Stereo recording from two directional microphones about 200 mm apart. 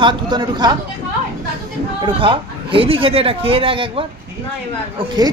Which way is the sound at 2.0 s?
25° right (ahead or behind).